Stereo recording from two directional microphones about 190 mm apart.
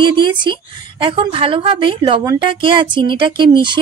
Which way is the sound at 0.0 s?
25° right (ahead or behind).